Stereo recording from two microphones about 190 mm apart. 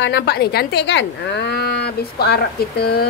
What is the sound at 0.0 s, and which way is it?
Speech, 60° left (ahead or behind).